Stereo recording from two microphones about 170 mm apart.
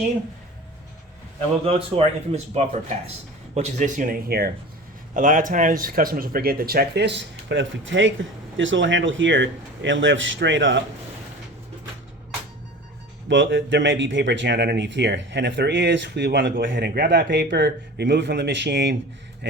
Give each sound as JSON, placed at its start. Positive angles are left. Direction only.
{"t": 1.6, "sound": "speech", "side_deg": -35}
{"t": 3.5, "sound": "speech", "side_deg": -40}
{"t": 13.2, "sound": "speech", "side_deg": -90}